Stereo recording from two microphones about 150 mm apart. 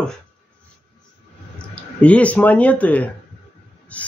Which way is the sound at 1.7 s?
10° left (ahead or behind).